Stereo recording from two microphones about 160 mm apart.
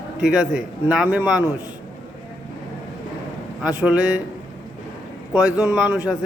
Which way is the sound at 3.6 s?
5° right (ahead or behind).